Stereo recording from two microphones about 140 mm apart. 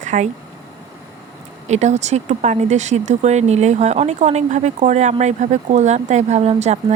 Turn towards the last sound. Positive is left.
turn(degrees=-50)  # may be behind; listen again after turning